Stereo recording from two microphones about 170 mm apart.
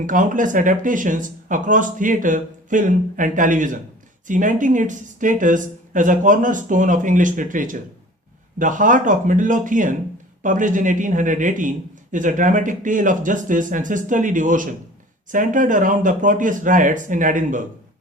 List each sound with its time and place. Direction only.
0.0 s speech: 50° right (ahead or behind)